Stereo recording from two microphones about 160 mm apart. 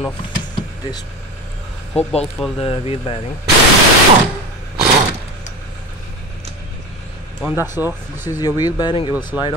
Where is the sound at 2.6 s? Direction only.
35° left (ahead or behind).